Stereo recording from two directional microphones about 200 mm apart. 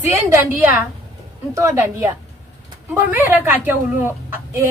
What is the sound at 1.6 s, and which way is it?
Speech, 15° right (ahead or behind).